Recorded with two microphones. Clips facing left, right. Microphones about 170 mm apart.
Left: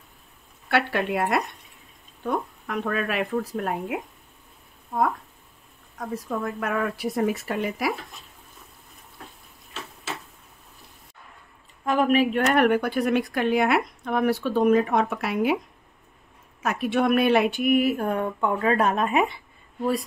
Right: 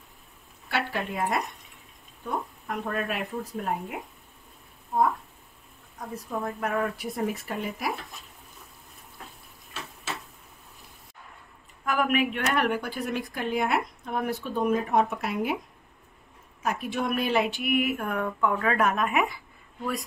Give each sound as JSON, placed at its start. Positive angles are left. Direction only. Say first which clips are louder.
{"t": 0.7, "sound": "speech", "louder": "left 6 dB", "side_deg": 65}
{"t": 5.9, "sound": "speech", "louder": "left 4 dB", "side_deg": 80}
{"t": 11.8, "sound": "speech", "louder": "left 5 dB", "side_deg": 30}
{"t": 16.6, "sound": "speech", "louder": "left 6 dB", "side_deg": 75}